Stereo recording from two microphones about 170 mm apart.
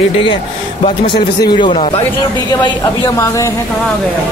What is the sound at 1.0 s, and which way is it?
Speech, 25° left (ahead or behind).